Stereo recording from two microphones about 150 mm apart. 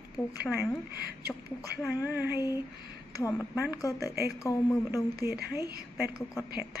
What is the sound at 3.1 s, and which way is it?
Speech, 20° left (ahead or behind).